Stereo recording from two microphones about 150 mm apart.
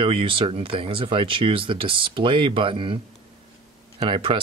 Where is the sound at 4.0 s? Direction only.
35° right (ahead or behind).